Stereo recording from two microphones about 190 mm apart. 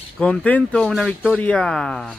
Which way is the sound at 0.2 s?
5° left (ahead or behind).